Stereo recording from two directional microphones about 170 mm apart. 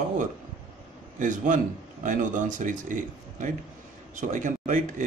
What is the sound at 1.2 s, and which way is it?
Speech, 50° right (ahead or behind).